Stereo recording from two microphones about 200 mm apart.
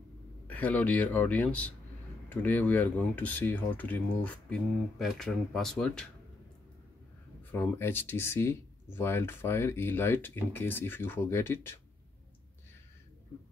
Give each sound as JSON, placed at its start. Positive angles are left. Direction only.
{"t": 0.5, "sound": "speech", "side_deg": 5}
{"t": 7.5, "sound": "speech", "side_deg": 10}